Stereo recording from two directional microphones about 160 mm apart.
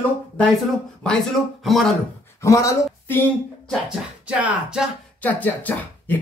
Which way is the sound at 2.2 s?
20° left (ahead or behind).